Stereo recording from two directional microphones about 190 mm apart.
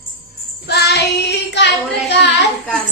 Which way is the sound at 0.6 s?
60° left (ahead or behind).